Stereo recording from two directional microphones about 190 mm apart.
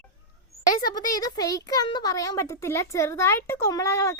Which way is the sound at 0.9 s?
20° left (ahead or behind).